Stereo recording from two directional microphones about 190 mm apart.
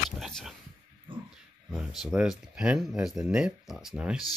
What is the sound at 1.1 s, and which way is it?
Dog, 25° right (ahead or behind).